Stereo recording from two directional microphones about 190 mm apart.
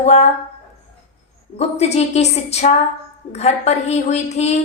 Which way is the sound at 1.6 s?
35° left (ahead or behind).